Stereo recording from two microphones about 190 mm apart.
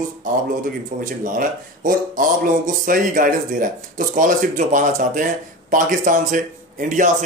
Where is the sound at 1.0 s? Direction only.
45° right (ahead or behind).